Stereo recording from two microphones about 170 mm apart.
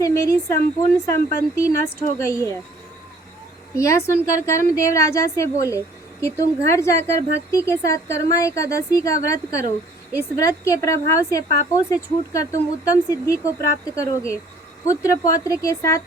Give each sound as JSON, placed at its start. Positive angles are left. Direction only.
{"t": 0.0, "sound": "a woman's voice", "side_deg": 15}
{"t": 3.8, "sound": "a woman's voice", "side_deg": 15}